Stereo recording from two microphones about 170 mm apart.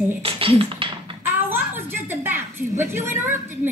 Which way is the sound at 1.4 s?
10° right (ahead or behind).